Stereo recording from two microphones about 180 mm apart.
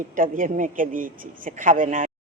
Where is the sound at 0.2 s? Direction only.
45° right (ahead or behind).